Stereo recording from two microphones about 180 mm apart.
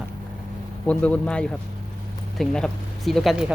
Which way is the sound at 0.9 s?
5° left (ahead or behind).